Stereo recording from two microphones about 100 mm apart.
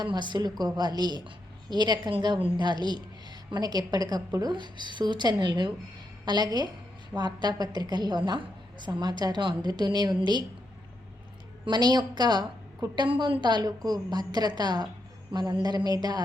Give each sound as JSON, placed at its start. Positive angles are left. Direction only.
{"t": 0.0, "sound": "a woman's voice", "side_deg": -50}
{"t": 11.6, "sound": "a woman's voice", "side_deg": -45}